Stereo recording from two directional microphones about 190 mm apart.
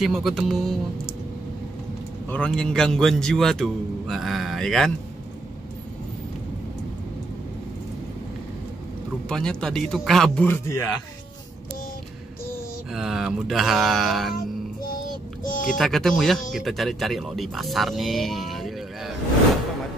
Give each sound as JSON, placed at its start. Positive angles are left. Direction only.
{"t": 0.0, "sound": "a man's voice", "side_deg": 0}
{"t": 2.2, "sound": "a man's voice", "side_deg": 5}
{"t": 9.3, "sound": "a man's voice", "side_deg": 5}
{"t": 12.9, "sound": "a man's voice", "side_deg": 0}
{"t": 15.4, "sound": "speech", "side_deg": 45}
{"t": 15.8, "sound": "speech", "side_deg": 0}